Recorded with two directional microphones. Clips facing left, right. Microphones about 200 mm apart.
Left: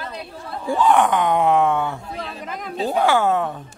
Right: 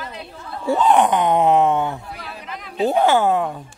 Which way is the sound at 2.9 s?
20° right (ahead or behind).